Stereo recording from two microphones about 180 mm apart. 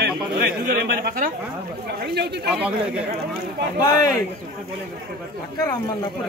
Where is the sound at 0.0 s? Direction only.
55° right (ahead or behind).